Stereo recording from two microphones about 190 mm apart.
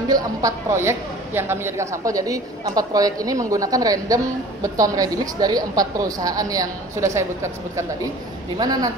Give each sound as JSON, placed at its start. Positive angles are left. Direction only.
{"t": 0.1, "sound": "a woman's voice", "side_deg": -15}